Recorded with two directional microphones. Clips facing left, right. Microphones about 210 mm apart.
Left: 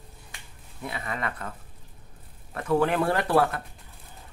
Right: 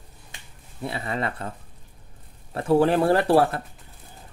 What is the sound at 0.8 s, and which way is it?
Speech, 30° right (ahead or behind).